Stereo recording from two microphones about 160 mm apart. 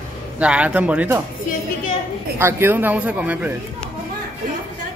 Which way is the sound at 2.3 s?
15° right (ahead or behind).